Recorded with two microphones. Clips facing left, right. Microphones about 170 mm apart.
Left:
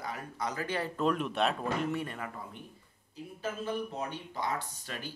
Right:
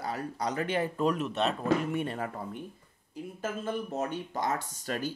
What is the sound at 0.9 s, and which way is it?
Speech, 5° right (ahead or behind).